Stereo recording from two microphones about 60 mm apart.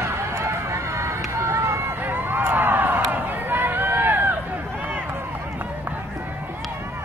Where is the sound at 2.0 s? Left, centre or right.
Right.